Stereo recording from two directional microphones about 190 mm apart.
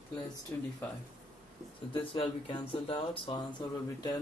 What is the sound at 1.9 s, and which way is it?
Speech, 30° left (ahead or behind).